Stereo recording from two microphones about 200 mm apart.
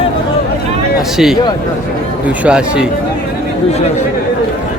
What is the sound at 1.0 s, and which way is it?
A man's voice, centre (ahead or behind).